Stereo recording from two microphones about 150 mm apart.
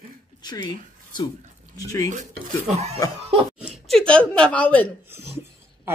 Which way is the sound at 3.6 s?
Centre (ahead or behind).